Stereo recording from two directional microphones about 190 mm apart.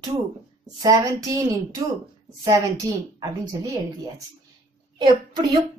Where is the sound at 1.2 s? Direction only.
20° right (ahead or behind).